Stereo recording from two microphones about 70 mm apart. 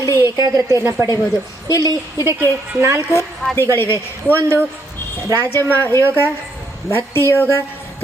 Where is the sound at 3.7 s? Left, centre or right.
Left.